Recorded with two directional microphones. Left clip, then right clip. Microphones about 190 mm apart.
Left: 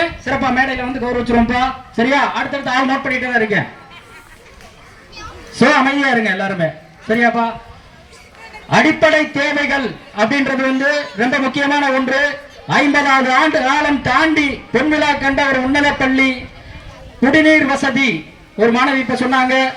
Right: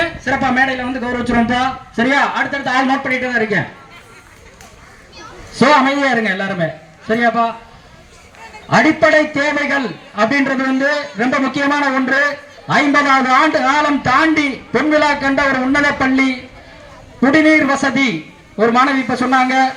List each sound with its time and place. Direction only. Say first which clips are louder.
0.0 s speech: right 1 dB; 10° right (ahead or behind)
5.5 s a man's voice: right 1 dB; centre (ahead or behind); by 7.5 s 20° left (ahead or behind)
8.7 s a man's voice: right 1 dB; 25° left (ahead or behind)